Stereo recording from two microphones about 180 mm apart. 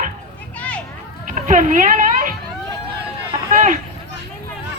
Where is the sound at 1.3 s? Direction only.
45° right (ahead or behind).